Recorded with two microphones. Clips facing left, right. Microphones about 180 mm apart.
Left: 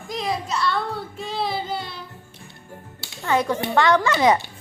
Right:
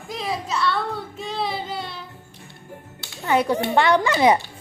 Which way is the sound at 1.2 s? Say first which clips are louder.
Left 2 dB; centre (ahead or behind).